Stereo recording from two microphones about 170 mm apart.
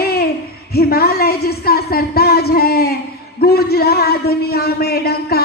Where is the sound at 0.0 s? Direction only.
65° left (ahead or behind).